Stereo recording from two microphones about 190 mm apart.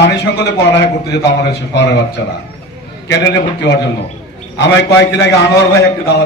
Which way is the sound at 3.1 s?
70° left (ahead or behind).